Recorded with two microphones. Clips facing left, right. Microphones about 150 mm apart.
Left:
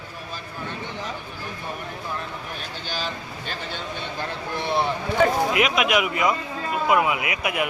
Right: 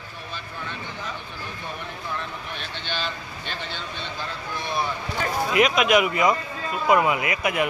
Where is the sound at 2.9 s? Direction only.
40° left (ahead or behind).